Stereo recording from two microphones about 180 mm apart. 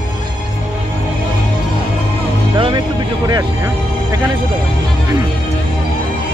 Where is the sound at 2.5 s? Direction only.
30° right (ahead or behind).